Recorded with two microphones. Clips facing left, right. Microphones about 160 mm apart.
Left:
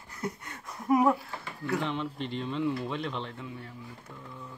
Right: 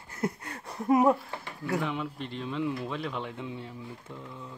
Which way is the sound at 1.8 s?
5° right (ahead or behind).